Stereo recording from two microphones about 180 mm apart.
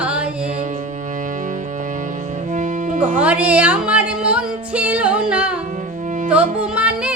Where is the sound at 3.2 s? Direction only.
5° right (ahead or behind).